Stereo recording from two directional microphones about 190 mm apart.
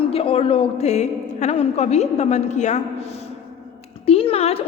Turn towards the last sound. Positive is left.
turn(degrees=30)  # may be behind; listen again after turning